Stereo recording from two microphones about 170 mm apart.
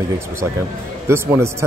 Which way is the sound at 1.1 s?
15° right (ahead or behind).